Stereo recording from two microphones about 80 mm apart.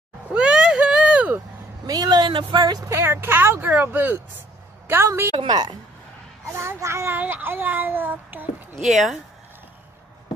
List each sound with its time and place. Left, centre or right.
0.3 s a sound: centre
1.9 s a sound: right
2.9 s a child's voice: right
5.3 s a woman's voice: right
6.5 s a child's voice: right
7.2 s a child's voice: right
8.7 s speech: centre